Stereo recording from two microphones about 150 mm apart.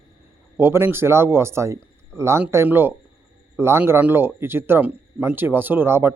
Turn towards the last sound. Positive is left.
turn(degrees=-15)  # may be behind; listen again after turning